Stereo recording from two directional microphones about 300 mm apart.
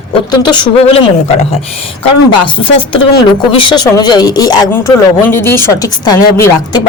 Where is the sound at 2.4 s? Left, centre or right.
Centre.